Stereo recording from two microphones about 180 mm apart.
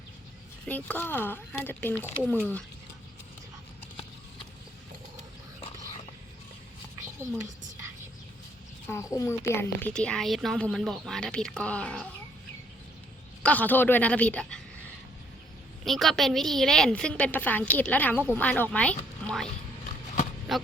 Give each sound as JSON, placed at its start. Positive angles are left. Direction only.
{"t": 0.7, "sound": "speech", "side_deg": 10}
{"t": 7.0, "sound": "a sound", "side_deg": -15}
{"t": 8.9, "sound": "a woman's voice", "side_deg": 15}
{"t": 13.4, "sound": "speech", "side_deg": 10}
{"t": 15.8, "sound": "a woman's voice", "side_deg": 0}
{"t": 20.5, "sound": "music", "side_deg": 0}